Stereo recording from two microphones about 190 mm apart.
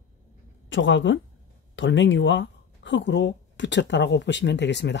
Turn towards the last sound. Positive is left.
turn(degrees=65)  # may be behind; listen again after turning